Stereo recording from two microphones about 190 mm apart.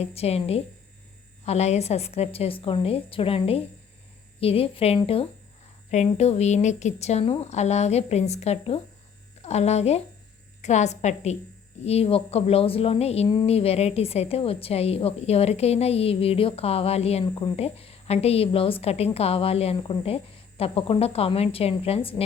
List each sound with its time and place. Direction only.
0.0 s speech: 30° left (ahead or behind)